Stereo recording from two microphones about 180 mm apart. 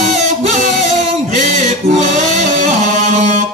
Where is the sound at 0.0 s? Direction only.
40° right (ahead or behind).